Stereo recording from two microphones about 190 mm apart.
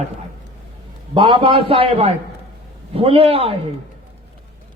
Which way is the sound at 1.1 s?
25° right (ahead or behind).